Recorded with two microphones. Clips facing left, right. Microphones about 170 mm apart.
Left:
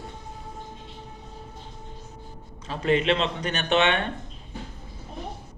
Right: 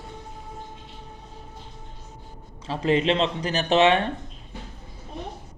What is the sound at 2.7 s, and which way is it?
Speech, 30° right (ahead or behind).